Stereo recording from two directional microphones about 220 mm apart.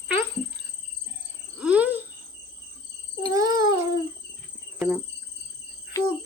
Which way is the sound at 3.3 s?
15° right (ahead or behind).